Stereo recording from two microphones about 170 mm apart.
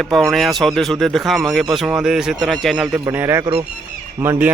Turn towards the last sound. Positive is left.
turn(degrees=-10)  # may be behind; listen again after turning